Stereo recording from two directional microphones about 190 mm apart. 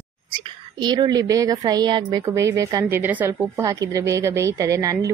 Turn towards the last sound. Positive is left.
turn(degrees=-20)  # may be behind; listen again after turning